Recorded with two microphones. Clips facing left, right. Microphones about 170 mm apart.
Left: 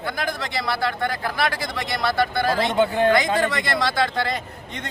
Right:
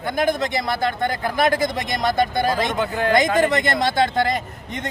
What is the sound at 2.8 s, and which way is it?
Speech, 25° left (ahead or behind).